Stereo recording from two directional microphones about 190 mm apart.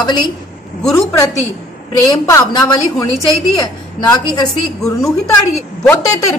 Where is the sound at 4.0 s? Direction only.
20° left (ahead or behind).